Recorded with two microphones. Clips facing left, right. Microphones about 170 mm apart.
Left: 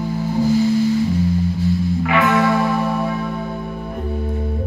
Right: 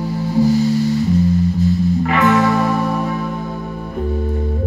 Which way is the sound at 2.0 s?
40° right (ahead or behind).